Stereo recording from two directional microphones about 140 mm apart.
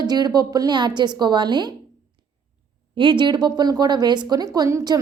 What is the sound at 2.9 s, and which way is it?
A woman's voice, 35° right (ahead or behind).